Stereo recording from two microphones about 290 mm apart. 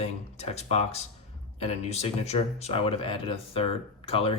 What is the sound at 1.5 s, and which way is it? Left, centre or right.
Speech, left.